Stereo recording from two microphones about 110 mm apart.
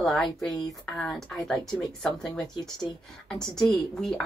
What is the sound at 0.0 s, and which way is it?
A woman's voice, centre (ahead or behind).